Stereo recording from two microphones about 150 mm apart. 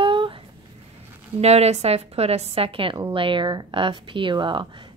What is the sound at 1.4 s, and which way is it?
A woman's voice, 45° right (ahead or behind).